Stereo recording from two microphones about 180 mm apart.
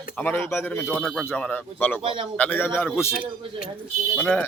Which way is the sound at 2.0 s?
30° right (ahead or behind).